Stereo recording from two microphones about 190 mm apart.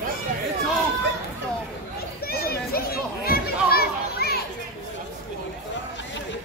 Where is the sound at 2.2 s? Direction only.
55° left (ahead or behind).